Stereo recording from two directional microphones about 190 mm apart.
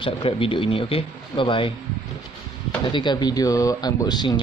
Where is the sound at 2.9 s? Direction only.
25° left (ahead or behind).